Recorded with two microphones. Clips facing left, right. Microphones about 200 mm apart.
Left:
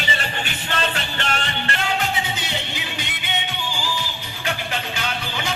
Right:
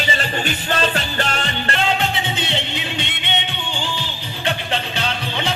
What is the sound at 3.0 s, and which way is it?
Music, 25° right (ahead or behind).